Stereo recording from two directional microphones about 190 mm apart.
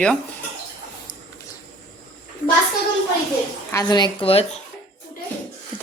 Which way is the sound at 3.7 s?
20° left (ahead or behind).